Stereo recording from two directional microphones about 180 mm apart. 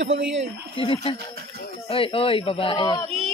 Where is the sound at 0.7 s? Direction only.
30° left (ahead or behind).